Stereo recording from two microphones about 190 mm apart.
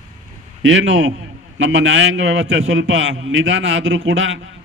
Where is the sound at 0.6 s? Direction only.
90° right.